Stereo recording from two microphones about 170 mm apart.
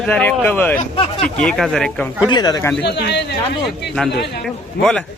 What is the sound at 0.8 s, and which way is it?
Speech, 35° left (ahead or behind).